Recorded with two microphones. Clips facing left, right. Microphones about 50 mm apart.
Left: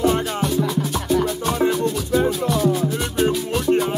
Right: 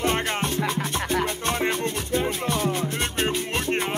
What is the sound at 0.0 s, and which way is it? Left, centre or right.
Music, right.